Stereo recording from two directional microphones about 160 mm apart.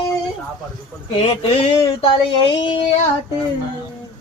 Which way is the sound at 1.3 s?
35° left (ahead or behind).